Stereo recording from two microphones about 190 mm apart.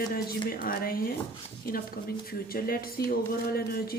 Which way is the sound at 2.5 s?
50° left (ahead or behind).